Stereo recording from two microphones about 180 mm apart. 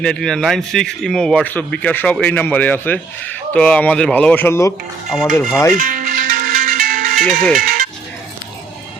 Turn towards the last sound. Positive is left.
turn(degrees=-50)  # may be behind; listen again after turning